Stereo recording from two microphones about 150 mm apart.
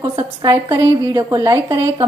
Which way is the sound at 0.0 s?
25° right (ahead or behind).